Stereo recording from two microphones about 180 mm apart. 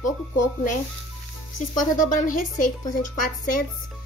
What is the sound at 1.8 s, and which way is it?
Speech, 45° left (ahead or behind).